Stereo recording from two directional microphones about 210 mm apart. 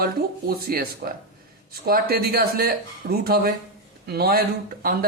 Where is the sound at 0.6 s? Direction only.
45° right (ahead or behind).